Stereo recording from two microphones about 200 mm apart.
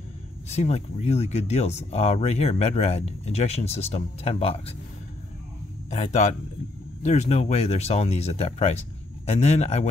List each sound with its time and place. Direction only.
0.5 s speech: 35° left (ahead or behind)
5.9 s speech: 35° left (ahead or behind)